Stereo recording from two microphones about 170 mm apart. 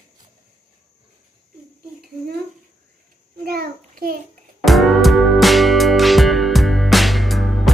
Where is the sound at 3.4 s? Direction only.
65° right (ahead or behind).